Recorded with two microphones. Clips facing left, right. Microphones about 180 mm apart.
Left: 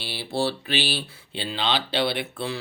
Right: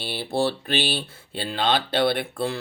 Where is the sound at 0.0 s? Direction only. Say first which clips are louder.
Right 2 dB; 50° right (ahead or behind).